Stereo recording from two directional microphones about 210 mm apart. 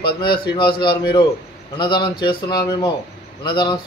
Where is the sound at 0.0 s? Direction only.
25° left (ahead or behind).